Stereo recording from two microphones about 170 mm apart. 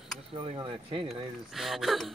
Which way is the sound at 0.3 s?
30° right (ahead or behind).